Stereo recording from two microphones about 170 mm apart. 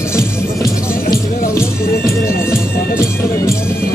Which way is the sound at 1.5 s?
15° left (ahead or behind).